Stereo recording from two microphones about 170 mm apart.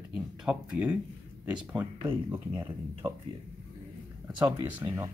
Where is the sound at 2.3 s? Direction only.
15° right (ahead or behind).